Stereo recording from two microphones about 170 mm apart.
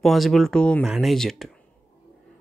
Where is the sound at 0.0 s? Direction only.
Centre (ahead or behind).